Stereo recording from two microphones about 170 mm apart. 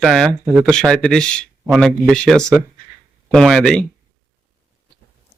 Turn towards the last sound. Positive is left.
turn(degrees=5)  # may be behind; listen again after turning